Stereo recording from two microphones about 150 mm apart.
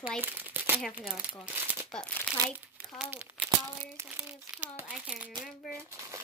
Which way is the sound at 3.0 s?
10° right (ahead or behind).